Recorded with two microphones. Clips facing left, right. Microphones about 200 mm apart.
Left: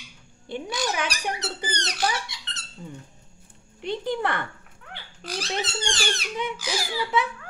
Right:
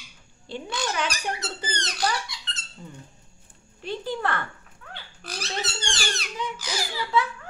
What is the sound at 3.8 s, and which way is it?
A child's voice, 20° left (ahead or behind).